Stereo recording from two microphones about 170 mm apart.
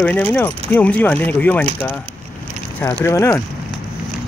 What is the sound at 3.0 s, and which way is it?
Speech, 15° left (ahead or behind).